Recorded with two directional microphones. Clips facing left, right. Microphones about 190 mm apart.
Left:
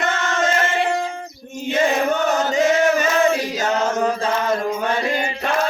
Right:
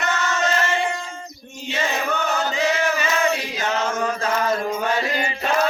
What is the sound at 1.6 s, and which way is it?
Chant, 50° left (ahead or behind).